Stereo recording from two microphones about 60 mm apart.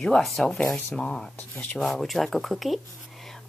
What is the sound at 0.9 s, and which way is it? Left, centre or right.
A woman's voice, centre.